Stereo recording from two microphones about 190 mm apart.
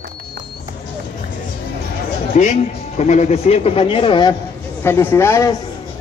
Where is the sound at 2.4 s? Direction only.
40° left (ahead or behind).